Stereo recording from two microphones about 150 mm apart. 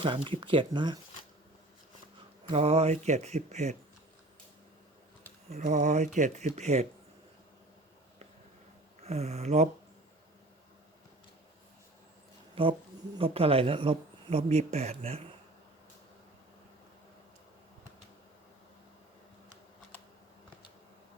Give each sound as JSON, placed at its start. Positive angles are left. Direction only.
{"t": 0.0, "sound": "speech", "side_deg": -35}
{"t": 2.5, "sound": "mantra", "side_deg": -45}
{"t": 5.5, "sound": "mantra", "side_deg": -50}
{"t": 9.0, "sound": "mantra", "side_deg": -45}
{"t": 12.6, "sound": "speech", "side_deg": -40}